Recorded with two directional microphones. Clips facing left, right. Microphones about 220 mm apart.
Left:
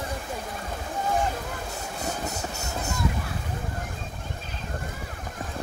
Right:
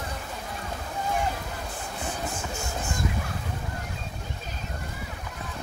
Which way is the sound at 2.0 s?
40° left (ahead or behind).